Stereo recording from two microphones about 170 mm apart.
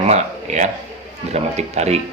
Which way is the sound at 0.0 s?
45° right (ahead or behind).